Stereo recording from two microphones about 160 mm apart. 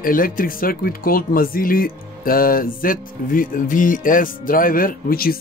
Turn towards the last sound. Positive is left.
turn(degrees=65)  # may be behind; listen again after turning